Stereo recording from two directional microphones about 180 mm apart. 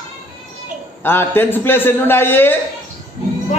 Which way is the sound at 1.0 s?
10° left (ahead or behind).